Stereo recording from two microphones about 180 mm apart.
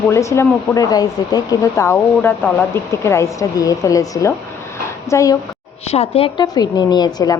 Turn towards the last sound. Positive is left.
turn(degrees=20)  # may be behind; listen again after turning